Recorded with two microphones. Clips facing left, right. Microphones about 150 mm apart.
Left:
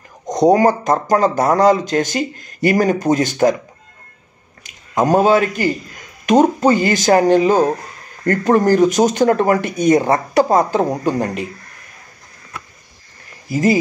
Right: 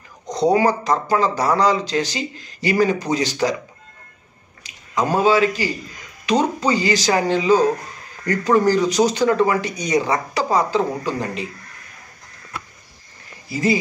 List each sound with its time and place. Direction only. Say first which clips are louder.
0.4 s speech: left 4 dB; 45° left (ahead or behind)
4.6 s speech: left 5 dB; 45° left (ahead or behind)
13.5 s speech: left 4 dB; 45° left (ahead or behind)